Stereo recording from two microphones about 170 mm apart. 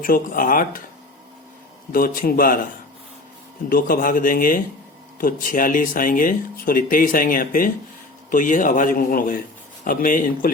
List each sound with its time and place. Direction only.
0.0 s speech: 55° left (ahead or behind)
1.9 s speech: 55° left (ahead or behind)
3.7 s a man's voice: 55° left (ahead or behind)